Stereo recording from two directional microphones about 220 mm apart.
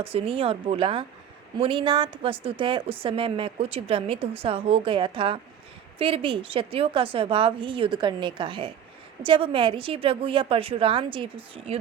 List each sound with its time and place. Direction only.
0.0 s a woman's voice: 25° right (ahead or behind)